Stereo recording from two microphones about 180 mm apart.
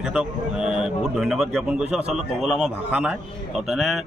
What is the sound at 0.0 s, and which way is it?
Speech, 5° right (ahead or behind).